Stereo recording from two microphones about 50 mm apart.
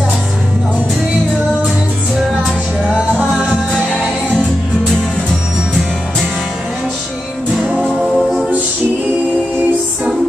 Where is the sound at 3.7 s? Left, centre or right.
Centre.